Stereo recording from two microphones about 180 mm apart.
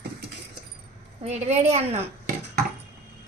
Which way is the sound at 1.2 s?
40° right (ahead or behind).